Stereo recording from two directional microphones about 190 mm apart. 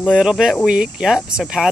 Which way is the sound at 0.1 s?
5° right (ahead or behind).